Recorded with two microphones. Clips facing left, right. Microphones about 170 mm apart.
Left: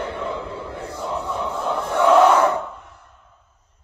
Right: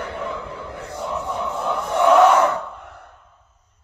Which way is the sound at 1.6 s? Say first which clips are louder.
Even; 25° left (ahead or behind).